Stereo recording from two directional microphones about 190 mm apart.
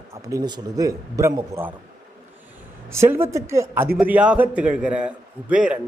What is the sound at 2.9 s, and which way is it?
A man's voice, 10° right (ahead or behind).